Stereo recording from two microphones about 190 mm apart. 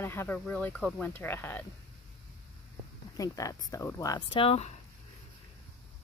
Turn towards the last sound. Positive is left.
turn(degrees=30)  # may be behind; listen again after turning